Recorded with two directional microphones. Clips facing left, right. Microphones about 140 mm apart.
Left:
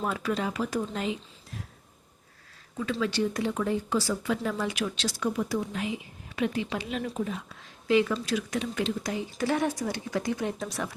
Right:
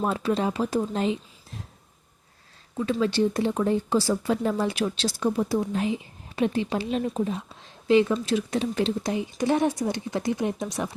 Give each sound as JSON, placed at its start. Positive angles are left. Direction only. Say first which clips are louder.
{"t": 0.0, "sound": "speech", "louder": "right 5 dB", "side_deg": -30}
{"t": 3.0, "sound": "speech", "louder": "right 5 dB", "side_deg": -30}